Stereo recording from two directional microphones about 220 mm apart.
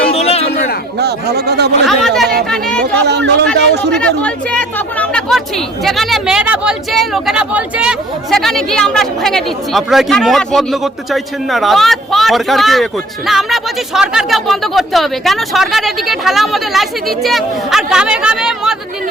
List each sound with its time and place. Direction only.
0.1 s a sound: 30° left (ahead or behind)
0.9 s speech: 45° right (ahead or behind)
1.9 s speech: centre (ahead or behind)
3.0 s speech: 50° right (ahead or behind)
3.9 s speech: 5° left (ahead or behind)